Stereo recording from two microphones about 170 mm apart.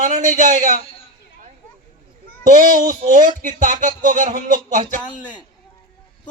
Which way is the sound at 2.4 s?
50° right (ahead or behind).